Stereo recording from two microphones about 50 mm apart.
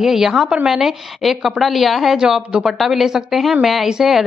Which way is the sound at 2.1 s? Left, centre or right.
Centre.